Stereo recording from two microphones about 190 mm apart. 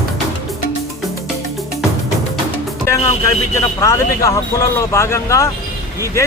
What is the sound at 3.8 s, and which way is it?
Speech, 15° left (ahead or behind).